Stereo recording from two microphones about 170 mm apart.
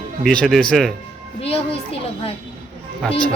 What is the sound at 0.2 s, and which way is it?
Speech, 5° left (ahead or behind).